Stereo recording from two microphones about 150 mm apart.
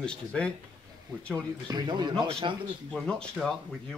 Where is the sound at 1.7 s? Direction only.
30° right (ahead or behind).